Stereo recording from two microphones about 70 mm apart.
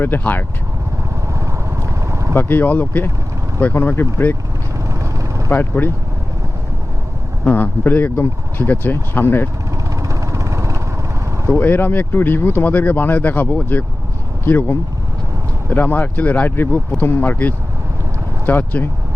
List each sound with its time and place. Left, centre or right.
0.0 s speech: left
1.3 s vehicle: right
2.3 s speech: left
5.5 s speech: left
7.4 s speech: left
10.0 s vehicle: right
11.6 s speech: left